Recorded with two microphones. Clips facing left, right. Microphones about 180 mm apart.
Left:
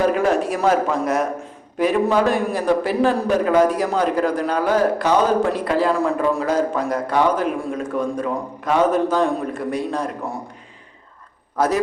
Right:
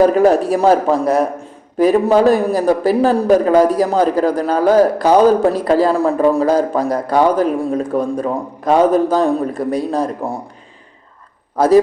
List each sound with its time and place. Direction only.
0.0 s a man's voice: 35° right (ahead or behind)
11.5 s a man's voice: 30° right (ahead or behind)